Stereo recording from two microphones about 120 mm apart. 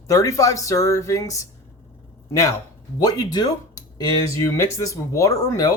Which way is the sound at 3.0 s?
30° left (ahead or behind).